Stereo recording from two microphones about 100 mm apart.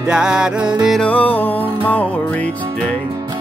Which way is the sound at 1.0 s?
15° left (ahead or behind).